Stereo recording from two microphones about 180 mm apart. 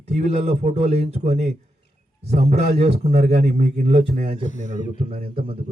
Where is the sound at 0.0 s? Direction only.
35° right (ahead or behind).